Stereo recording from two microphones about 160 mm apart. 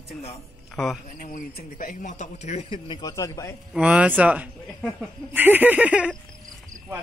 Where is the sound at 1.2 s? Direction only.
60° left (ahead or behind); by 2.8 s 45° left (ahead or behind).